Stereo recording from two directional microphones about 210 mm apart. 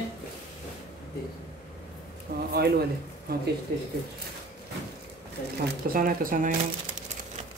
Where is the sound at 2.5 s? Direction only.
50° right (ahead or behind).